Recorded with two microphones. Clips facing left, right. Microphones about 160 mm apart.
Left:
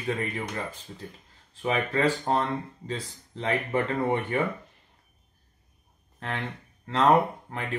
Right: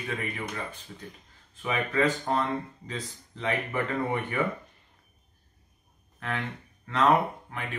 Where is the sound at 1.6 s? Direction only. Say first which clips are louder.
Left 2 dB; 30° left (ahead or behind).